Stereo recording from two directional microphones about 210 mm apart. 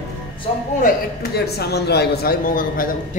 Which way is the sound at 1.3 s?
50° left (ahead or behind).